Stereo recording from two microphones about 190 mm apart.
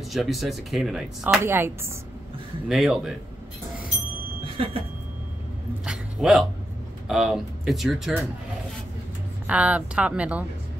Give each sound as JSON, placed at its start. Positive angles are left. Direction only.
{"t": 0.1, "sound": "speech", "side_deg": 0}
{"t": 2.7, "sound": "speech", "side_deg": 0}
{"t": 4.6, "sound": "a sound", "side_deg": -30}
{"t": 5.9, "sound": "a man's voice", "side_deg": 0}
{"t": 9.5, "sound": "speech", "side_deg": -5}